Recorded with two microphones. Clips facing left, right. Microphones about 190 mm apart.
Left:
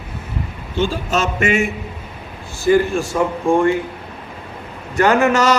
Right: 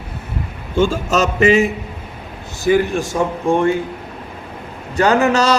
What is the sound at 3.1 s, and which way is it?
Speech, 20° right (ahead or behind).